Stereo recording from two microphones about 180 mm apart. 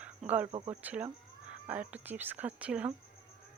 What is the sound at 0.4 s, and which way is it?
Speech, 30° right (ahead or behind).